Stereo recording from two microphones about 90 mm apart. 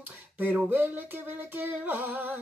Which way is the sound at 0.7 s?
20° right (ahead or behind).